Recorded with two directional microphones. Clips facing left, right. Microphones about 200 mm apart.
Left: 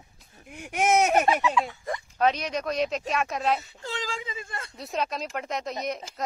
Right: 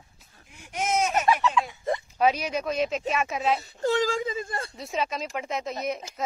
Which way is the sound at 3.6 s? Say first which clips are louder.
Right 10 dB; 45° right (ahead or behind).